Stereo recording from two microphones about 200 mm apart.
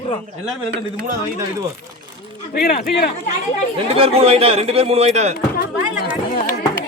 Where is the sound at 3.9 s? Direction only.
30° right (ahead or behind).